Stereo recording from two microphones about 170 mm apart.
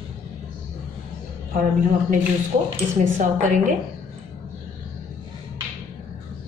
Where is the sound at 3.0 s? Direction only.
50° right (ahead or behind).